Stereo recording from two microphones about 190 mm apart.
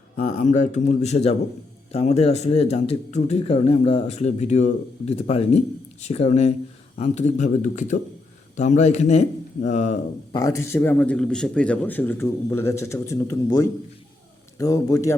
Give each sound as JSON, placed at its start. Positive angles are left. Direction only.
{"t": 0.2, "sound": "speech", "side_deg": 40}
{"t": 10.3, "sound": "a man's voice", "side_deg": 15}
{"t": 14.6, "sound": "a man's voice", "side_deg": 20}